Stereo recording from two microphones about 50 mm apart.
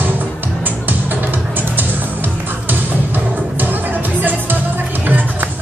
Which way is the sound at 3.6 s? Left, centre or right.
Right.